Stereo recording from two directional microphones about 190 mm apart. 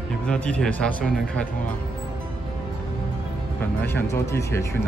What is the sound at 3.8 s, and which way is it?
Speech, 15° left (ahead or behind).